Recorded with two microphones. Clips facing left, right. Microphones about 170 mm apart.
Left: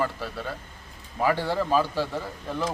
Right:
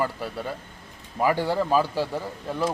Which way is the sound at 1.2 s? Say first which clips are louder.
Right 2 dB; 10° right (ahead or behind).